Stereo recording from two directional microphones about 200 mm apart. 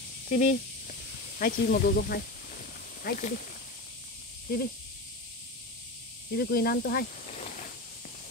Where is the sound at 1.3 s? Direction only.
45° left (ahead or behind).